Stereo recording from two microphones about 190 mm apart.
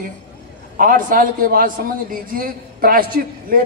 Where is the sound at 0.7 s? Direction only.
45° right (ahead or behind).